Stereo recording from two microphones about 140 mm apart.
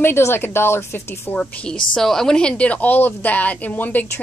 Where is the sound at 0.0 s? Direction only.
15° left (ahead or behind).